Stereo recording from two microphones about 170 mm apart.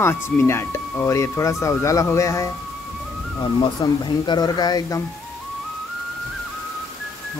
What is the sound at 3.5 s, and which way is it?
Speech, 25° left (ahead or behind).